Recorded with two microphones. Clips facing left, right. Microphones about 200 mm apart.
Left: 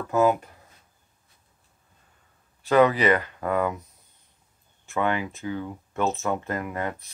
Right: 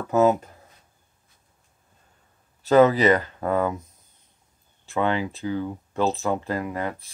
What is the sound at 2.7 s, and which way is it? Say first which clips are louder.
Speech: right 3 dB; 40° right (ahead or behind).